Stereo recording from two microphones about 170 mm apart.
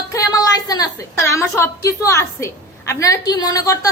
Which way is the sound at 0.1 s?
20° left (ahead or behind).